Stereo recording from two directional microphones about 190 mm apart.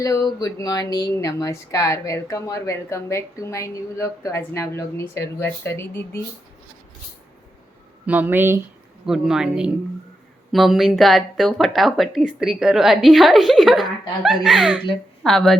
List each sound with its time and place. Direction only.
0.0 s speech: 20° left (ahead or behind)
8.0 s speech: 10° right (ahead or behind)